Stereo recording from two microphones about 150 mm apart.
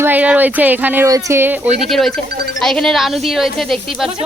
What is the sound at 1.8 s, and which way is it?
Speech, centre (ahead or behind).